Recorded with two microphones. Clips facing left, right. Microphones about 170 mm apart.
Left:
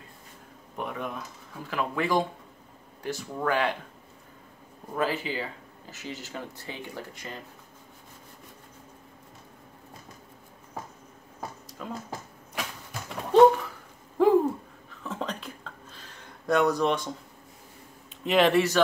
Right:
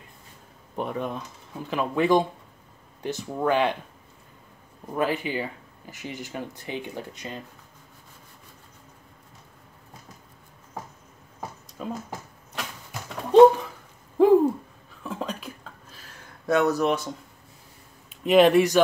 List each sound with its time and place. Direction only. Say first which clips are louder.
0.7 s speech: right 4 dB; 30° right (ahead or behind)
1.6 s speech: right 5 dB; 20° right (ahead or behind)
4.9 s speech: right 3 dB; 20° right (ahead or behind)
11.8 s a sound: right 4 dB; 20° right (ahead or behind)
13.3 s a sound: right 4 dB; 20° right (ahead or behind)
14.2 s owl: right 4 dB; 15° right (ahead or behind)
15.0 s a sound: right 2 dB; 10° right (ahead or behind)
16.4 s speech: right 2 dB; 5° right (ahead or behind)
18.2 s speech: right 5 dB; 15° right (ahead or behind)